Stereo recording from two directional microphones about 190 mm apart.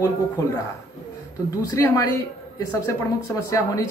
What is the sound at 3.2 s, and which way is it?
Speech, 15° left (ahead or behind).